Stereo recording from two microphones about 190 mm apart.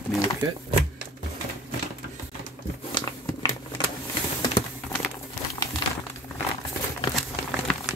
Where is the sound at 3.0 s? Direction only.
25° left (ahead or behind).